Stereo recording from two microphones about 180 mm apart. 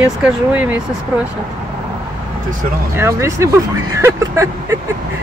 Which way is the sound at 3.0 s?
15° right (ahead or behind).